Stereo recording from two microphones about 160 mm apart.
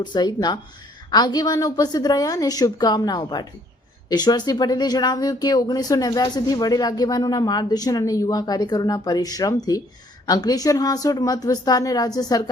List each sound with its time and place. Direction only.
0.0 s speech: 25° left (ahead or behind)